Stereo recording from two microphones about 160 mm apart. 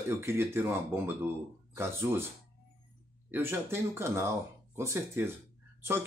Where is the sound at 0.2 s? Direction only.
15° right (ahead or behind).